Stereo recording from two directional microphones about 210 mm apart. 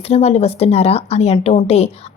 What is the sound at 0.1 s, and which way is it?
A woman's voice, 30° left (ahead or behind).